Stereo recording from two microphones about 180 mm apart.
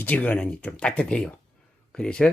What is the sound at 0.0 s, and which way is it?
Speech, 10° left (ahead or behind).